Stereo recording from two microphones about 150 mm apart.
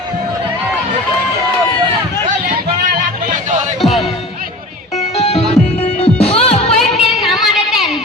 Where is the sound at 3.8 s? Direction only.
Centre (ahead or behind).